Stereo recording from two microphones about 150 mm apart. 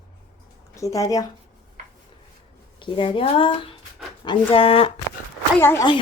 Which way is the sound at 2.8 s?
35° left (ahead or behind).